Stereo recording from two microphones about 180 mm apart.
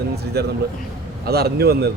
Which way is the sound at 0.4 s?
65° right (ahead or behind).